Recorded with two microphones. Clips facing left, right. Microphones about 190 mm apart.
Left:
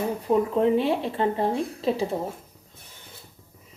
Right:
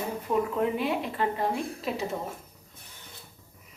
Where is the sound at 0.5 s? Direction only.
30° left (ahead or behind).